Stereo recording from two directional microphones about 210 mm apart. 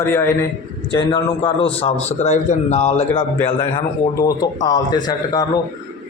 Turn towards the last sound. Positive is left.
turn(degrees=20)  # may be behind; listen again after turning